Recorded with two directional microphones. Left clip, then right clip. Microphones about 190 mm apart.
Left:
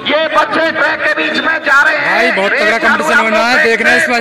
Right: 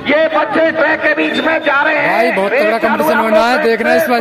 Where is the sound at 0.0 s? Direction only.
65° right (ahead or behind).